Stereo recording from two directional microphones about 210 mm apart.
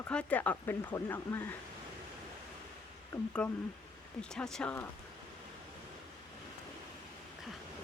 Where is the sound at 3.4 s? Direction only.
5° left (ahead or behind).